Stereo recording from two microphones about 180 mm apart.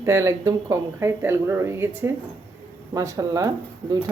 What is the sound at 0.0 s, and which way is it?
Speech, 15° right (ahead or behind).